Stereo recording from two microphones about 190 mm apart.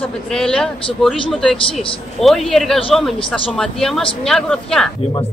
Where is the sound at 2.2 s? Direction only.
Centre (ahead or behind).